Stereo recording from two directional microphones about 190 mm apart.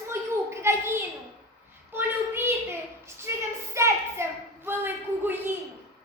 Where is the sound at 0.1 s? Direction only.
15° right (ahead or behind).